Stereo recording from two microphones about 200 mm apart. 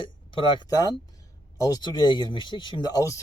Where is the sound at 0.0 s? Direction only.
25° left (ahead or behind).